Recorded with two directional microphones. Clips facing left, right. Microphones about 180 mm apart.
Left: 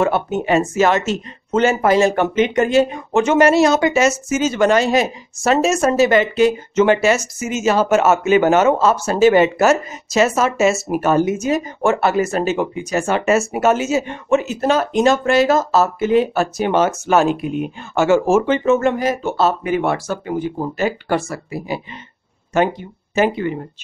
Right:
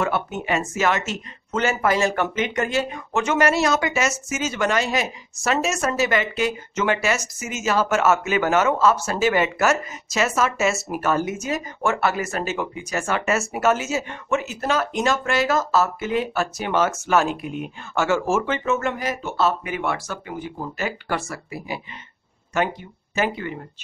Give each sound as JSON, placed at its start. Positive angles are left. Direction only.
{"t": 0.0, "sound": "speech", "side_deg": 30}